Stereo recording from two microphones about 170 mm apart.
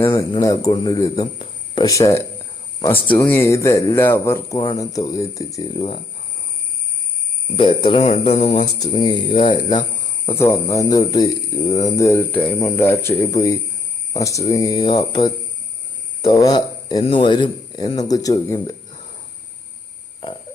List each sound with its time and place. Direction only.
0.0 s speech: 25° left (ahead or behind)
4.5 s speech: 30° left (ahead or behind)
7.5 s speech: 30° left (ahead or behind)
10.2 s speech: 15° left (ahead or behind)
11.9 s speech: 15° left (ahead or behind)